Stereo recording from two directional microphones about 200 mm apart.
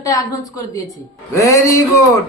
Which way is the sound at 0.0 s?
15° left (ahead or behind).